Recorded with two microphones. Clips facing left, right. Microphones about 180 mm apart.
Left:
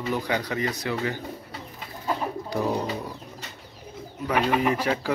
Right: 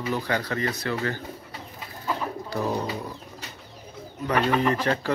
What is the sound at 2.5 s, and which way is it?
Speech, 15° left (ahead or behind).